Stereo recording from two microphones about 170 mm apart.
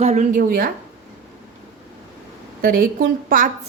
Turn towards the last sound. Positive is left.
turn(degrees=-55)  # may be behind; listen again after turning